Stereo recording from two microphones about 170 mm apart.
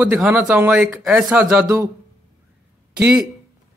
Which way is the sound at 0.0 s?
10° right (ahead or behind).